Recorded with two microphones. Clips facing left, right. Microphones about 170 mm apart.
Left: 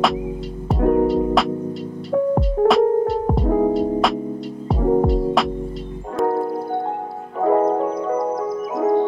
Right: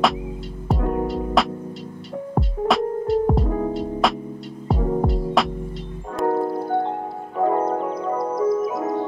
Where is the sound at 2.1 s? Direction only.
90° left.